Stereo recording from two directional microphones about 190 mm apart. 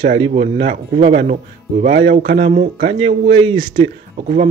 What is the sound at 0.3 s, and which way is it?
Speech, 35° right (ahead or behind).